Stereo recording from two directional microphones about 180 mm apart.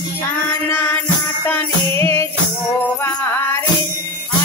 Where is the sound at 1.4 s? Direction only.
15° left (ahead or behind).